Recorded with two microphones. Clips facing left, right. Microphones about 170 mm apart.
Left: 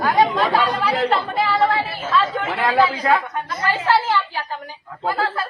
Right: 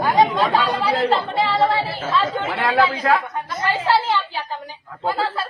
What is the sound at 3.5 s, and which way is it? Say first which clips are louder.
Speech: even; 25° right (ahead or behind).